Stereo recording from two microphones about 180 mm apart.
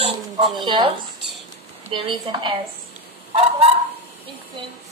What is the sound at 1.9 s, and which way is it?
Speech, 25° right (ahead or behind).